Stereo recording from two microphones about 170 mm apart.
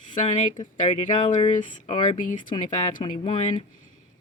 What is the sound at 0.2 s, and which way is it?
Speech, 45° left (ahead or behind).